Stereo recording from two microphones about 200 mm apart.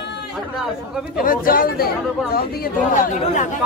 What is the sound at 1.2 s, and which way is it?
Speech, 45° left (ahead or behind).